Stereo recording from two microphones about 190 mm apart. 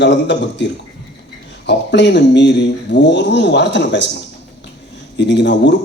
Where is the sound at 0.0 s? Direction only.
70° left (ahead or behind).